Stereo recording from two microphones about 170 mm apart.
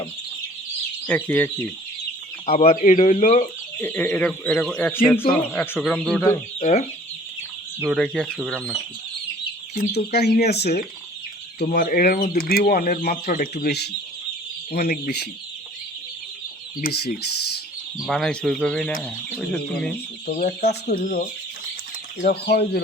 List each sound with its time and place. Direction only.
1.0 s speech: 10° left (ahead or behind)
2.6 s speech: 50° left (ahead or behind)
3.8 s speech: 10° left (ahead or behind)
6.6 s speech: 45° left (ahead or behind)
7.9 s speech: 5° left (ahead or behind)
9.9 s speech: 70° left (ahead or behind)
11.6 s speech: 65° left (ahead or behind)
16.8 s speech: 65° left (ahead or behind)
18.0 s speech: centre (ahead or behind)
20.4 s speech: 70° left (ahead or behind)
21.0 s speech: 50° left (ahead or behind)
22.3 s speech: 70° left (ahead or behind)